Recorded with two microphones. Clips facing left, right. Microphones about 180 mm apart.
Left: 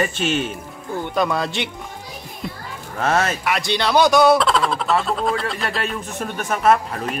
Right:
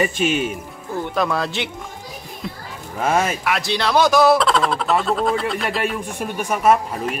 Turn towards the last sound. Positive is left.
turn(degrees=-10)  # may be behind; listen again after turning